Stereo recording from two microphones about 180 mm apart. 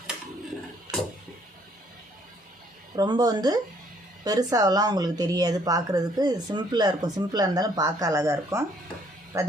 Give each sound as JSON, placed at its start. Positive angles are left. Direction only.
{"t": 2.9, "sound": "speech", "side_deg": -20}